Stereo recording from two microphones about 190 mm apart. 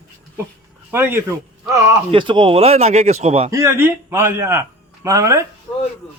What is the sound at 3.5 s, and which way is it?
A man's voice, 15° right (ahead or behind).